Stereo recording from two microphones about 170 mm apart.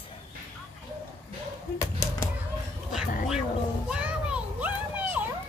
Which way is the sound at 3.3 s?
5° right (ahead or behind).